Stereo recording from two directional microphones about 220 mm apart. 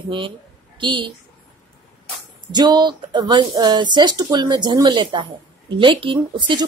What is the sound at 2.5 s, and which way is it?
Speech, 20° right (ahead or behind).